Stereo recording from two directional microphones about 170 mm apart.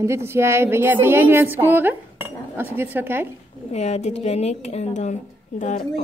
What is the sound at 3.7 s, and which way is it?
Speech, 40° left (ahead or behind).